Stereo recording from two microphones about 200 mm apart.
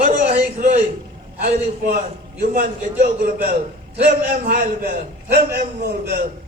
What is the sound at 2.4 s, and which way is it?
A man's voice, 45° right (ahead or behind).